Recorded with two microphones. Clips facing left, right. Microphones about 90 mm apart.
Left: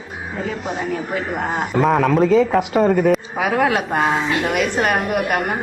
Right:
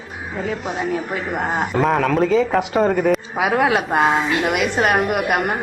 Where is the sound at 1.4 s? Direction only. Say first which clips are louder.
Even; 5° right (ahead or behind).